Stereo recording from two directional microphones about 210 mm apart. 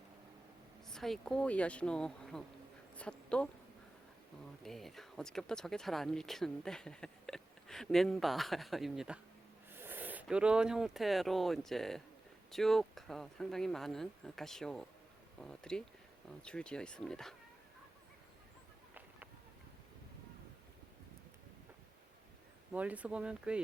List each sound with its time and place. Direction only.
0.9 s speech: centre (ahead or behind)
2.9 s a sound: 5° left (ahead or behind)
4.6 s speech: centre (ahead or behind)
22.7 s speech: 5° right (ahead or behind)